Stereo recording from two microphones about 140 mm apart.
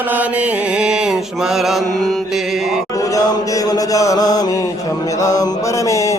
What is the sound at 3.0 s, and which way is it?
Chant, 25° left (ahead or behind).